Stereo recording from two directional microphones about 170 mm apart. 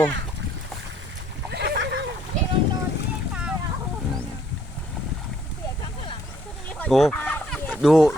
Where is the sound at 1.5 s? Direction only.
75° right (ahead or behind).